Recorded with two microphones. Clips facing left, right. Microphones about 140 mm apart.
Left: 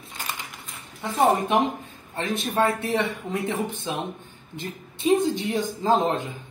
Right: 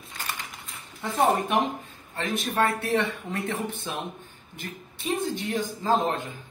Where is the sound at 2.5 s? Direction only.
20° left (ahead or behind).